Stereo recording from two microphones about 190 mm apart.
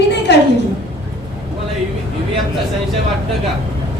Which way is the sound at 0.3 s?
65° left (ahead or behind).